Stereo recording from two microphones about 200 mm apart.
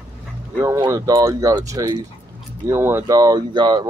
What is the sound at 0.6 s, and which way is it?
Speech, 15° right (ahead or behind).